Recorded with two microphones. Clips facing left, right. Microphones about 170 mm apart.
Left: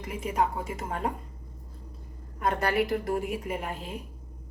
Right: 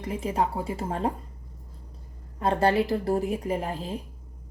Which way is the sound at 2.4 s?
30° right (ahead or behind).